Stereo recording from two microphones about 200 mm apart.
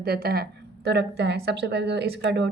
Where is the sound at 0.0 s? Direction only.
50° right (ahead or behind).